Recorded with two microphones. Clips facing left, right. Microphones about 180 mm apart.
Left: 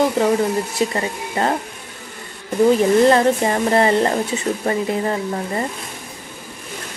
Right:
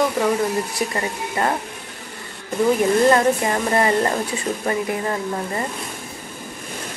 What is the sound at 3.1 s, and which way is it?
Speech, 25° left (ahead or behind).